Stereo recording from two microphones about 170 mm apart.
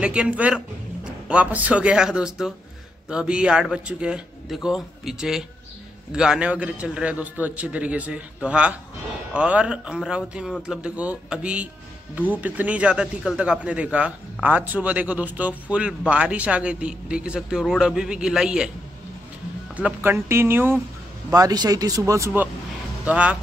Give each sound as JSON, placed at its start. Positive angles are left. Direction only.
{"t": 0.0, "sound": "a man's voice", "side_deg": -5}
{"t": 19.7, "sound": "speech", "side_deg": -10}